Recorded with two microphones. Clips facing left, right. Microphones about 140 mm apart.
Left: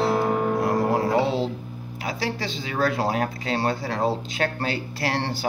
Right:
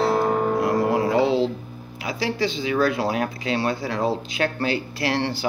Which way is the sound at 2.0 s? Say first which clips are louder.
Right 4 dB; 35° left (ahead or behind).